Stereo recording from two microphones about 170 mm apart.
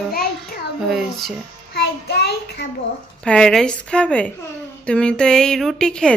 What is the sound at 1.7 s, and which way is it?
Child singing, 70° left (ahead or behind).